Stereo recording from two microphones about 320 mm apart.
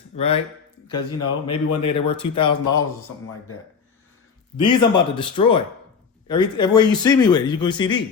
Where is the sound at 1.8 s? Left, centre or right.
Centre.